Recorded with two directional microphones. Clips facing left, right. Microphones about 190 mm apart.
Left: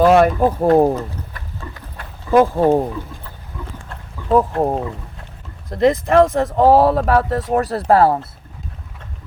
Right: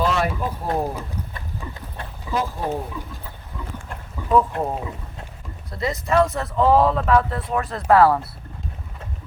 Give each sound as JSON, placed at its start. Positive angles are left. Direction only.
{"t": 0.0, "sound": "speech", "side_deg": 55}
{"t": 1.6, "sound": "clip-clop", "side_deg": -10}
{"t": 2.3, "sound": "speech", "side_deg": 60}
{"t": 4.3, "sound": "speech", "side_deg": 40}
{"t": 5.7, "sound": "speech", "side_deg": 50}